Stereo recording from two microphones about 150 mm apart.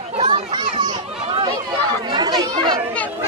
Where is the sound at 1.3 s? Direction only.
40° right (ahead or behind).